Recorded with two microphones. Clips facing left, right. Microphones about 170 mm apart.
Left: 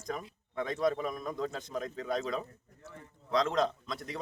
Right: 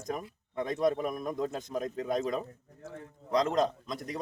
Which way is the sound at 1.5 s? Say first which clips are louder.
Right 3 dB; 45° right (ahead or behind).